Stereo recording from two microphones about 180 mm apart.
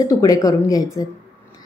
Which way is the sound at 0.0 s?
20° left (ahead or behind).